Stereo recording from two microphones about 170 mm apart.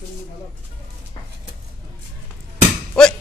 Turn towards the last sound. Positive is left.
turn(degrees=5)  # may be behind; listen again after turning